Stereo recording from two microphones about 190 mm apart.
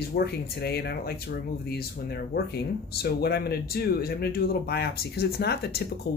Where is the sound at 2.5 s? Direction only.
60° left (ahead or behind).